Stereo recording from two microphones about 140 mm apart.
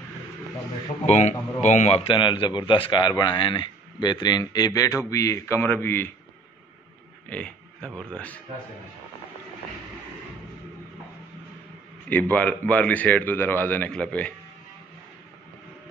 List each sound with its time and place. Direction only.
1.0 s a man's voice: 55° left (ahead or behind)
2.1 s a man's voice: 35° left (ahead or behind); by 6.1 s 15° left (ahead or behind)
7.2 s speech: 10° left (ahead or behind)
12.1 s speech: 10° left (ahead or behind)